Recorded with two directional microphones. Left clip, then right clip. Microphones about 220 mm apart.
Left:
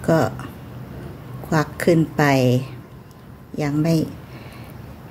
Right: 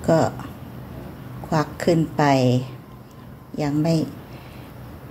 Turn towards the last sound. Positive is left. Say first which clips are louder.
# left 1 dB
turn(degrees=15)  # may be behind; listen again after turning